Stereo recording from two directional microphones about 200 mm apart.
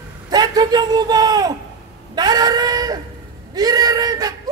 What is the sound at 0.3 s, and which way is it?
A man's voice, 20° right (ahead or behind).